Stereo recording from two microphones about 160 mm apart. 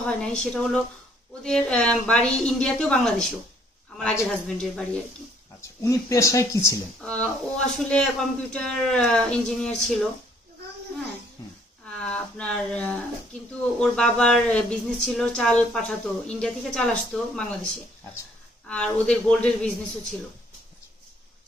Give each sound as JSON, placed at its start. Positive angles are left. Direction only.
{"t": 0.0, "sound": "speech", "side_deg": 5}
{"t": 5.6, "sound": "speech", "side_deg": 20}
{"t": 7.0, "sound": "speech", "side_deg": 5}
{"t": 11.8, "sound": "speech", "side_deg": 5}
{"t": 18.7, "sound": "speech", "side_deg": 5}